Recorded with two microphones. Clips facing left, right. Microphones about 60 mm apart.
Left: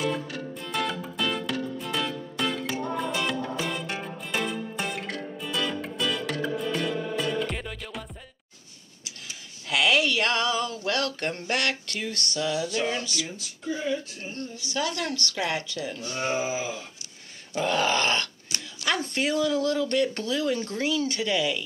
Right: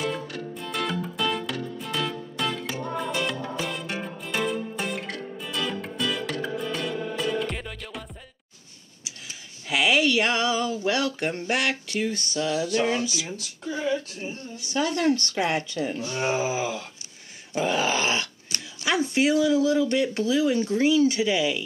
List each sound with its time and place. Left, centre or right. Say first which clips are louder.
0.0 s music: left 1 dB; centre
9.7 s speech: right 1 dB; centre
14.7 s speech: right 6 dB; right
16.3 s a sound: right 2 dB; right
17.6 s speech: even; centre